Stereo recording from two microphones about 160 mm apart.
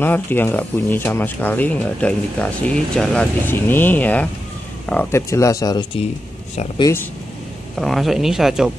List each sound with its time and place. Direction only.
0.0 s speech: 10° left (ahead or behind)
7.7 s speech: centre (ahead or behind)